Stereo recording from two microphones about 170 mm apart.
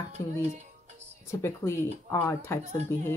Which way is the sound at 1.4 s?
15° left (ahead or behind).